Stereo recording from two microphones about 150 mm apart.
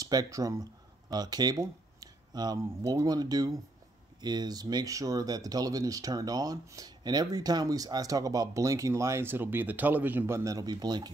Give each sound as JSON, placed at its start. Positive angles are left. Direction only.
{"t": 0.0, "sound": "speech", "side_deg": -25}